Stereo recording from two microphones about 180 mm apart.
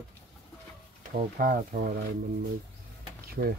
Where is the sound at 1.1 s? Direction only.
50° right (ahead or behind).